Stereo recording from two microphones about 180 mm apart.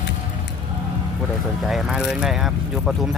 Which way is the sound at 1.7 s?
Centre (ahead or behind).